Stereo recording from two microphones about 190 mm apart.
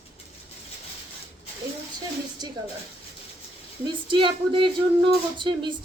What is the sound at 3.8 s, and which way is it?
Speech, 25° right (ahead or behind).